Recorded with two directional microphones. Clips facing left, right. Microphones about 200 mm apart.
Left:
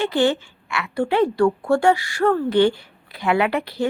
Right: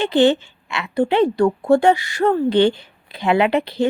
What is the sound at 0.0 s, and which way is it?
A woman's voice, 20° right (ahead or behind).